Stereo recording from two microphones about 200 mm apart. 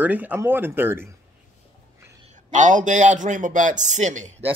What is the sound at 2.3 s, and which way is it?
A man's voice, 40° right (ahead or behind).